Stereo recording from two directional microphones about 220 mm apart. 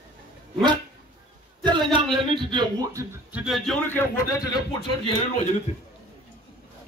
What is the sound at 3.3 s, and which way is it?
A man's voice, centre (ahead or behind).